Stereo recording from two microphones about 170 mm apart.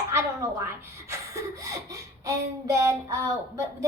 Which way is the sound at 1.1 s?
20° right (ahead or behind).